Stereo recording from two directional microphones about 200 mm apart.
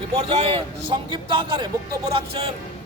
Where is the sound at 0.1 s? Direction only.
25° right (ahead or behind).